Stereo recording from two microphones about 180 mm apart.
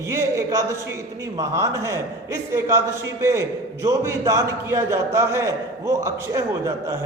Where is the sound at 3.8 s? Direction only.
15° right (ahead or behind).